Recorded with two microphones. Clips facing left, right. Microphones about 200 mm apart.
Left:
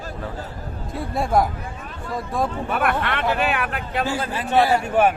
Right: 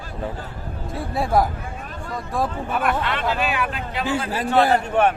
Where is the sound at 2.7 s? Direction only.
60° left (ahead or behind).